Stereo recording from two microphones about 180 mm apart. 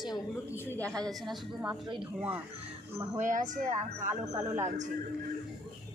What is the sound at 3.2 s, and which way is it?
A woman's voice, 45° right (ahead or behind).